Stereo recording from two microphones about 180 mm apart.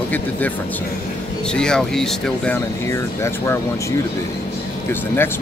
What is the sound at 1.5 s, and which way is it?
Speech, 5° left (ahead or behind).